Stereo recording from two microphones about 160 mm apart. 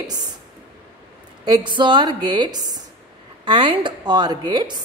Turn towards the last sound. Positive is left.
turn(degrees=-25)  # may be behind; listen again after turning